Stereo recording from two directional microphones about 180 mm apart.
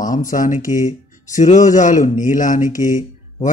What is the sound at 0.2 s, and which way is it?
Speech, 50° left (ahead or behind).